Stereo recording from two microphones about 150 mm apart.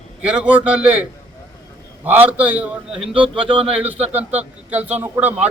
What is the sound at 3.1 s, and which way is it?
Speech, 35° right (ahead or behind).